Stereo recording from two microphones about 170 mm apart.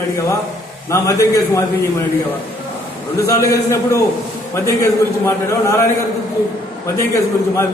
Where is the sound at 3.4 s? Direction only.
15° left (ahead or behind).